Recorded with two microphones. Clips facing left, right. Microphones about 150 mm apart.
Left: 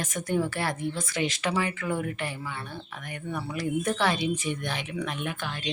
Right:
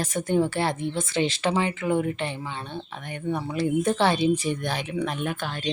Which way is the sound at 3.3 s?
25° right (ahead or behind).